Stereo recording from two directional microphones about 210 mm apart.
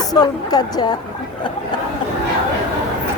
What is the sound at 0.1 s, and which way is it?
Speech, 20° left (ahead or behind).